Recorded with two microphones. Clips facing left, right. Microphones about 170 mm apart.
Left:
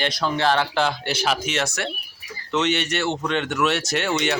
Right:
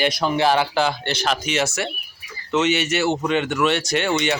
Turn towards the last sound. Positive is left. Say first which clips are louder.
# right 2 dB
turn(degrees=0)  # may be behind; listen again after turning